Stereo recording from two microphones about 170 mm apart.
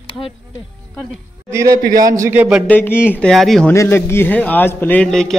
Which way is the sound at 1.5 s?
20° right (ahead or behind).